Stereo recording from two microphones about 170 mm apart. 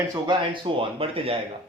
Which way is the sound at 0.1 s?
25° right (ahead or behind).